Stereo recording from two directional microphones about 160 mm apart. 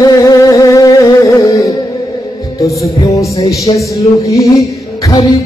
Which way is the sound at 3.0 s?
20° left (ahead or behind).